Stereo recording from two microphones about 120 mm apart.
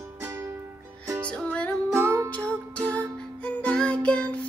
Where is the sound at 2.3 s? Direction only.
10° left (ahead or behind).